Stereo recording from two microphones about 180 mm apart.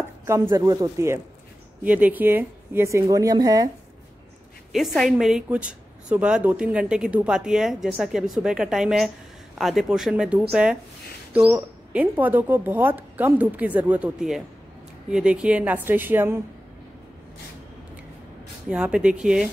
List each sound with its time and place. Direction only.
0.3 s speech: 15° right (ahead or behind)
4.7 s speech: centre (ahead or behind)
18.7 s speech: 5° right (ahead or behind)